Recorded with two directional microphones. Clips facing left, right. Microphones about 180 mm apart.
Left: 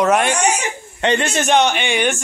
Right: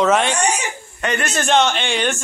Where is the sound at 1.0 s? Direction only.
25° left (ahead or behind).